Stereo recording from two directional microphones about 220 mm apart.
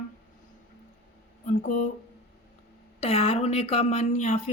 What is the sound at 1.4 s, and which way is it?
Speech, 35° left (ahead or behind).